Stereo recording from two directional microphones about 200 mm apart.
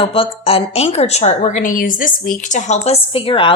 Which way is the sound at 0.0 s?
30° left (ahead or behind).